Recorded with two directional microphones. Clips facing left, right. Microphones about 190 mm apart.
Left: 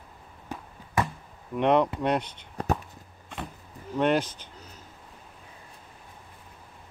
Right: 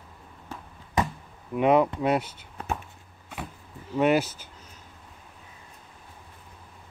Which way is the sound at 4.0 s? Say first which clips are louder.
Right 2 dB; 5° right (ahead or behind).